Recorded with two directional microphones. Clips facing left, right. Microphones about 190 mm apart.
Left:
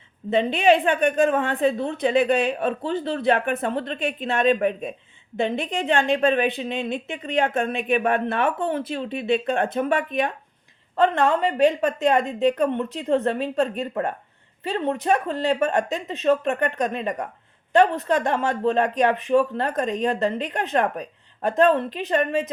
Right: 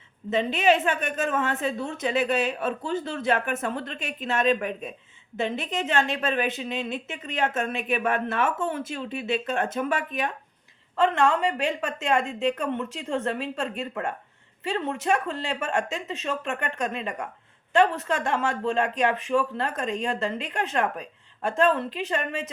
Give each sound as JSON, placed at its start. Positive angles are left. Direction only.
{"t": 0.3, "sound": "a woman's voice", "side_deg": 35}